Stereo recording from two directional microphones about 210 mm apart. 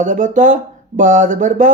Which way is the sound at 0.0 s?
35° right (ahead or behind).